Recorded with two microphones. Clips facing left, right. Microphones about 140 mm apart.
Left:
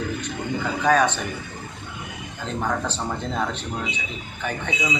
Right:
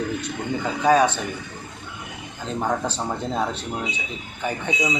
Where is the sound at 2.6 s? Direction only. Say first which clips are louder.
Right 2 dB; 15° right (ahead or behind).